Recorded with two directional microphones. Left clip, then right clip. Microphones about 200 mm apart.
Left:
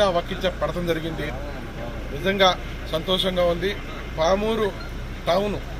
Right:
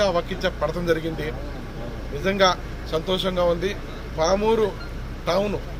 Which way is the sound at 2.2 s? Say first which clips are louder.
Left 1 dB; 5° right (ahead or behind).